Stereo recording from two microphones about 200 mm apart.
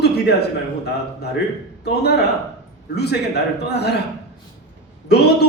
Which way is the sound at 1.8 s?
55° left (ahead or behind).